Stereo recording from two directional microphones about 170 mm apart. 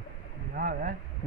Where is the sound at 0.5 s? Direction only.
55° right (ahead or behind).